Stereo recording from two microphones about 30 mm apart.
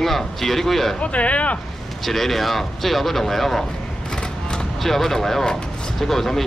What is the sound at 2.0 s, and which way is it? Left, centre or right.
Speech, centre.